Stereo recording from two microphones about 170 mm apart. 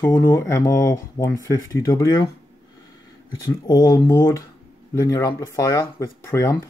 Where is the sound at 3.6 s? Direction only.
20° left (ahead or behind).